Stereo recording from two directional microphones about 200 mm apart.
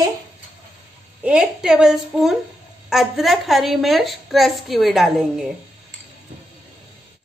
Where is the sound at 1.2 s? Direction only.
5° right (ahead or behind).